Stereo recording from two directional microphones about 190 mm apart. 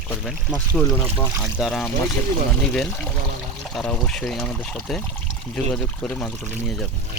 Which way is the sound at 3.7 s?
Centre (ahead or behind).